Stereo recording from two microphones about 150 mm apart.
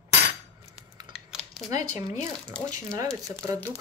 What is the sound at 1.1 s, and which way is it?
Typing, centre (ahead or behind).